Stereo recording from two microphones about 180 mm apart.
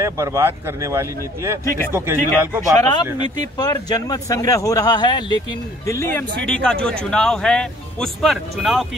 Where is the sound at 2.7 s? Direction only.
20° left (ahead or behind); by 8.8 s centre (ahead or behind).